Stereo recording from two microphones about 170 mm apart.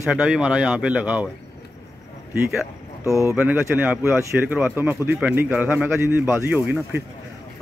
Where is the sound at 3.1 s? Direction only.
15° right (ahead or behind).